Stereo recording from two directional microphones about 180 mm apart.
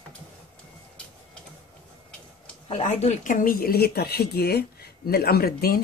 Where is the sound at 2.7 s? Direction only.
40° left (ahead or behind).